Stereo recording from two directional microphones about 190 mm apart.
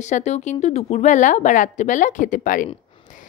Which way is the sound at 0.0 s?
35° left (ahead or behind).